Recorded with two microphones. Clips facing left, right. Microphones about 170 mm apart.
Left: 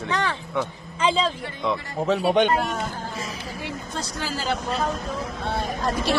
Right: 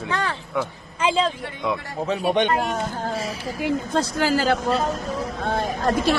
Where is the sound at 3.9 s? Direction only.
60° right (ahead or behind).